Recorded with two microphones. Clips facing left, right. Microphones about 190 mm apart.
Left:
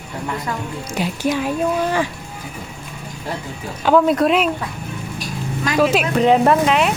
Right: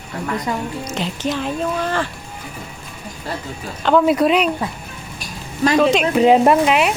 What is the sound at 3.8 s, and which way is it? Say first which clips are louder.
Speech: even; 10° left (ahead or behind).